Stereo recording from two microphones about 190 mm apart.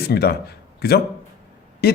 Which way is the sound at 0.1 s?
55° left (ahead or behind).